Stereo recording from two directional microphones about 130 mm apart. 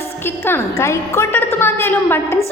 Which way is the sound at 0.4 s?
20° left (ahead or behind).